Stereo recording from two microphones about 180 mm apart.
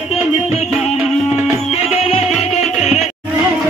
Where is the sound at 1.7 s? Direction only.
35° left (ahead or behind).